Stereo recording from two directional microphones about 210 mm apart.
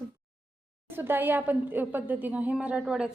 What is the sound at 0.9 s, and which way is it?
A woman's voice, 10° right (ahead or behind).